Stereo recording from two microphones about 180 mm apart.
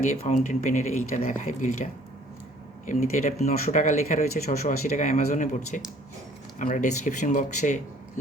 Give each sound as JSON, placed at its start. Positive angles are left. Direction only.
{"t": 0.1, "sound": "speech", "side_deg": 40}